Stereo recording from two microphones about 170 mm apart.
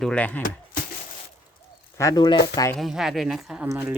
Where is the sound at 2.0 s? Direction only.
20° left (ahead or behind).